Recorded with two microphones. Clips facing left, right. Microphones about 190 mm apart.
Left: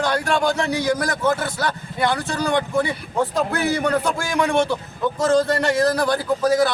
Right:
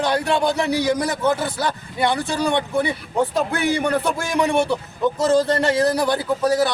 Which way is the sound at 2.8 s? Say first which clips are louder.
Right 1 dB; 15° right (ahead or behind).